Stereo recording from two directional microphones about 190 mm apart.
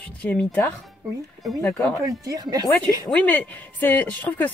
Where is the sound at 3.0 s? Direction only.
5° left (ahead or behind).